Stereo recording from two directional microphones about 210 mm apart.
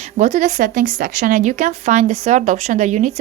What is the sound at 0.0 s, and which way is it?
Speech, 35° right (ahead or behind).